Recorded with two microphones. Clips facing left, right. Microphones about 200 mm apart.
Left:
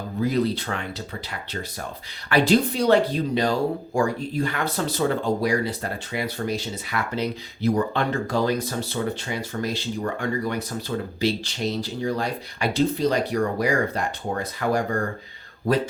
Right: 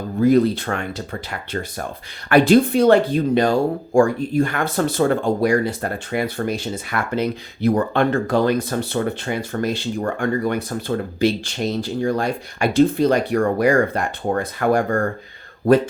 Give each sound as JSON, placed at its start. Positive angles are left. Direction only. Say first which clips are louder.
{"t": 0.2, "sound": "speech", "louder": "right 8 dB", "side_deg": -50}